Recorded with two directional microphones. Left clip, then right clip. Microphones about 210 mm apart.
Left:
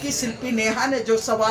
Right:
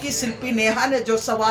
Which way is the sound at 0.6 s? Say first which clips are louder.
Right 2 dB; 20° right (ahead or behind).